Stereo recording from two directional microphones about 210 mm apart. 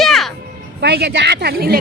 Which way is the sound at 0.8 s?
55° right (ahead or behind).